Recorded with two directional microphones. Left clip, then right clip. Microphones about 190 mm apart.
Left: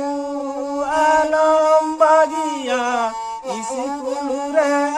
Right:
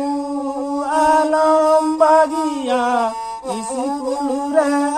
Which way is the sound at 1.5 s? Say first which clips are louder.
Right 1 dB; 15° left (ahead or behind).